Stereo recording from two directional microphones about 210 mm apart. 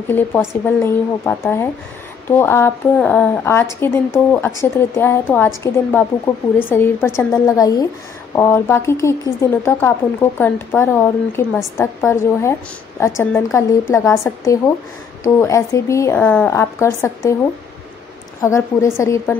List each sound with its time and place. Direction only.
0.5 s speech: 10° left (ahead or behind)
18.4 s speech: 15° left (ahead or behind)